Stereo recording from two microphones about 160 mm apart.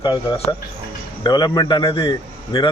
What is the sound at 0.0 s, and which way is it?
A man's voice, 30° left (ahead or behind).